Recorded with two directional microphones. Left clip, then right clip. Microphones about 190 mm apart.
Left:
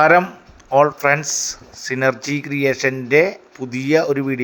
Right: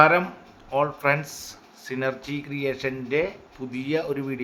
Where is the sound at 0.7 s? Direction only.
25° left (ahead or behind).